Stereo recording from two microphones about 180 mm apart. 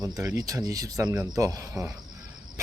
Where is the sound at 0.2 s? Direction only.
15° right (ahead or behind).